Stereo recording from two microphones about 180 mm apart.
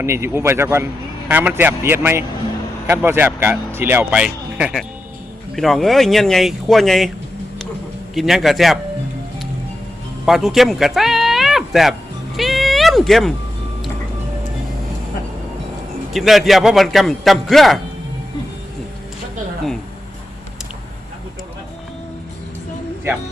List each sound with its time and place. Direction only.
0.0 s a man's voice: 15° right (ahead or behind); by 7.1 s centre (ahead or behind)
8.1 s a man's voice: centre (ahead or behind)
10.2 s speech: centre (ahead or behind)
12.4 s a sound: centre (ahead or behind)
16.1 s a man's voice: centre (ahead or behind)